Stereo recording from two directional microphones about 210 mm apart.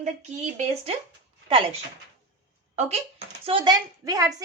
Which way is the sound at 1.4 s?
25° right (ahead or behind).